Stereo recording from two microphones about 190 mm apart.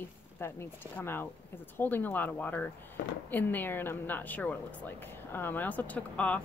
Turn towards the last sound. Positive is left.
turn(degrees=5)  # may be behind; listen again after turning